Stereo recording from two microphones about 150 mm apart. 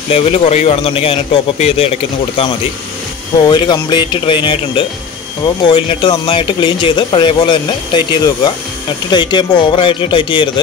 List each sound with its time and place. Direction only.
0.1 s speech: 40° left (ahead or behind)
3.4 s speech: 30° left (ahead or behind)